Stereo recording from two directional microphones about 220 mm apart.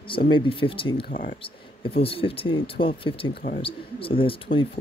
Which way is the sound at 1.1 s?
40° left (ahead or behind).